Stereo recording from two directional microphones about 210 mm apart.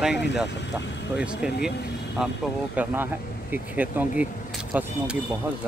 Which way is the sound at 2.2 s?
5° right (ahead or behind).